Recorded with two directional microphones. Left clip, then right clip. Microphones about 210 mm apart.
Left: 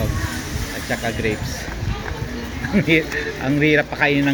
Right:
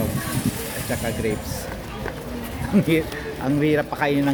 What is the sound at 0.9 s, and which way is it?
Speech, 5° right (ahead or behind).